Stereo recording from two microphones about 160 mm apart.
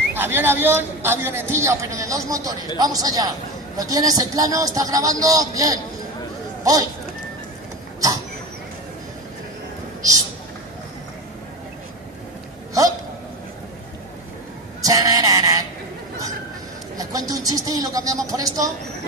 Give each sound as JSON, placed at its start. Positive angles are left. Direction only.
{"t": 0.1, "sound": "a woman's voice", "side_deg": -15}
{"t": 14.8, "sound": "sheep", "side_deg": -20}
{"t": 16.9, "sound": "a sound", "side_deg": -20}